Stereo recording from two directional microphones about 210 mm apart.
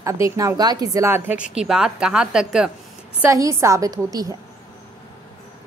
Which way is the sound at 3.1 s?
15° right (ahead or behind).